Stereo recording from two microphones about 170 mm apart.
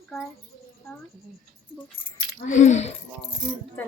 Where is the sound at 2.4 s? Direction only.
45° left (ahead or behind).